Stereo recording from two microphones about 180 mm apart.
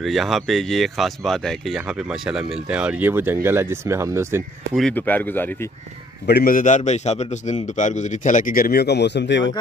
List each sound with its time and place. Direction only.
0.0 s speech: centre (ahead or behind)
4.7 s speech: 5° left (ahead or behind)
6.2 s a man's voice: 60° left (ahead or behind); by 9.5 s 80° left